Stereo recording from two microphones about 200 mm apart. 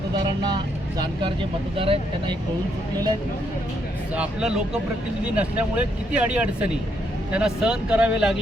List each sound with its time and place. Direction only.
0.4 s speech: 20° right (ahead or behind)
4.1 s speech: 5° right (ahead or behind)